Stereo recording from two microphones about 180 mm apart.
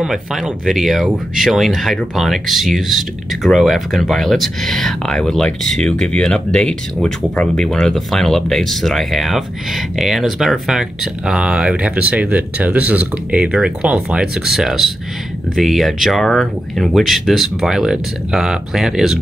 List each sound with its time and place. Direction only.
0.0 s speech: 5° right (ahead or behind)